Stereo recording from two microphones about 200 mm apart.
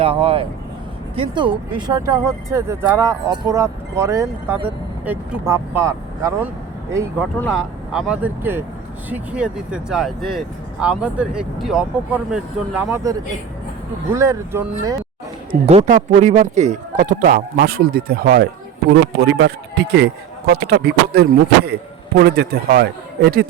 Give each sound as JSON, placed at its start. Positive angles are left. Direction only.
{"t": 0.0, "sound": "speech", "side_deg": -30}
{"t": 7.3, "sound": "speech", "side_deg": 0}
{"t": 14.2, "sound": "speech", "side_deg": -15}
{"t": 15.6, "sound": "a man's voice", "side_deg": -35}